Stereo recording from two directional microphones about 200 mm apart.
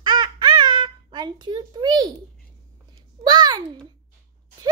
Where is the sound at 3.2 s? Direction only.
20° right (ahead or behind).